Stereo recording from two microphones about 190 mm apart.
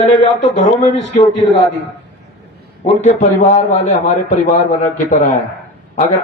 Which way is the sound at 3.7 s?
40° left (ahead or behind).